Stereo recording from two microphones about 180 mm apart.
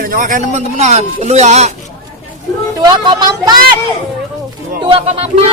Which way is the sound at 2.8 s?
25° right (ahead or behind).